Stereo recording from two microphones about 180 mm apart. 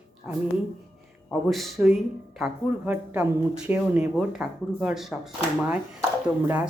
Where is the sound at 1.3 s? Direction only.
Centre (ahead or behind).